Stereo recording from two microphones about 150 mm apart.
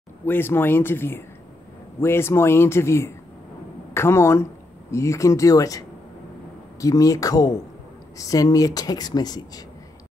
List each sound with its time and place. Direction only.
0.2 s speech: 15° left (ahead or behind)